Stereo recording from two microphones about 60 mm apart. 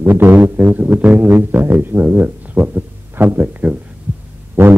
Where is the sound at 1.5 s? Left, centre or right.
Right.